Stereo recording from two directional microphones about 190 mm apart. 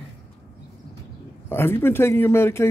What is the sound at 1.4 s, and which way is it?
Speech, 10° left (ahead or behind).